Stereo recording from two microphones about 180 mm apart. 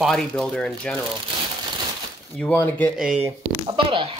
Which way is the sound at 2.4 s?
10° left (ahead or behind).